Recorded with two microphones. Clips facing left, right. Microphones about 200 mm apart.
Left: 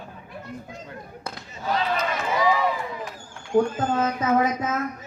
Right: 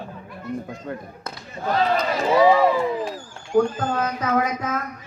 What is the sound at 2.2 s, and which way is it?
Speech, 30° right (ahead or behind).